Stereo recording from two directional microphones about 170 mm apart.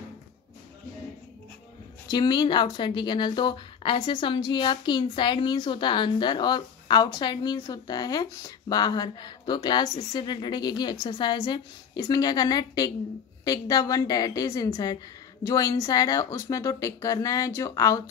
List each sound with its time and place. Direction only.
2.0 s speech: 25° left (ahead or behind)